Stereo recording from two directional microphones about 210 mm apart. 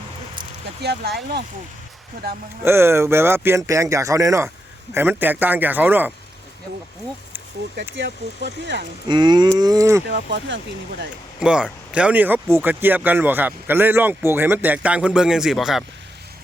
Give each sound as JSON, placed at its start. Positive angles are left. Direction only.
{"t": 0.8, "sound": "speech", "side_deg": -55}
{"t": 2.6, "sound": "speech", "side_deg": -10}
{"t": 7.9, "sound": "speech", "side_deg": -55}
{"t": 9.0, "sound": "cattle", "side_deg": -20}
{"t": 10.1, "sound": "speech", "side_deg": -55}
{"t": 11.3, "sound": "speech", "side_deg": -5}